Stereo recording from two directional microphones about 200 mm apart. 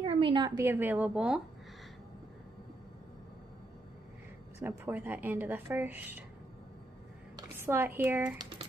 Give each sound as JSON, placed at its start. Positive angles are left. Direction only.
{"t": 0.0, "sound": "speech", "side_deg": -25}
{"t": 4.6, "sound": "speech", "side_deg": -10}
{"t": 7.3, "sound": "speech", "side_deg": -10}
{"t": 8.4, "sound": "typing", "side_deg": -25}